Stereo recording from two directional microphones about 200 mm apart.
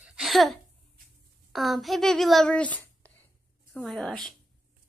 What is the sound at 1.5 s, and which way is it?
A child's voice, centre (ahead or behind).